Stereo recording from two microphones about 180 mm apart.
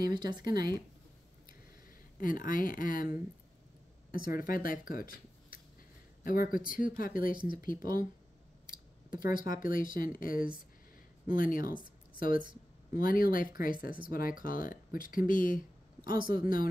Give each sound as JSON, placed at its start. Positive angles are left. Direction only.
{"t": 0.0, "sound": "speech", "side_deg": -25}
{"t": 0.5, "sound": "speech", "side_deg": 55}
{"t": 2.1, "sound": "speech", "side_deg": 50}
{"t": 11.8, "sound": "a sound", "side_deg": 50}
{"t": 12.9, "sound": "speech", "side_deg": 50}